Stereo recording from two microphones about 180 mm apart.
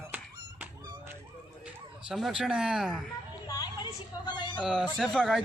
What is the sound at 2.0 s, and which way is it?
Speech, centre (ahead or behind).